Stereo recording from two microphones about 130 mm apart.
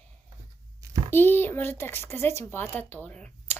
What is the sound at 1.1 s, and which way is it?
Speech, 15° left (ahead or behind).